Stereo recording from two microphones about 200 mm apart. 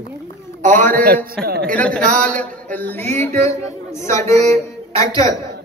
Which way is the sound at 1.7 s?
5° left (ahead or behind).